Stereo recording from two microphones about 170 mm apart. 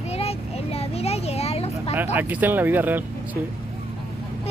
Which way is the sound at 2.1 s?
10° right (ahead or behind).